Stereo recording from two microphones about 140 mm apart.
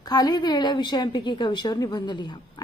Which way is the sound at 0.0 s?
30° left (ahead or behind).